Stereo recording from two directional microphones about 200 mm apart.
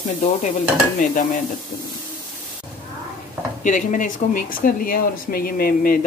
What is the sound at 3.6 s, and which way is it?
Speech, 40° left (ahead or behind).